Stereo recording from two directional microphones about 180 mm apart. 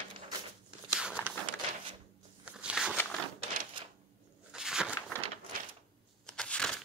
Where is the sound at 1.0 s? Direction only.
5° right (ahead or behind).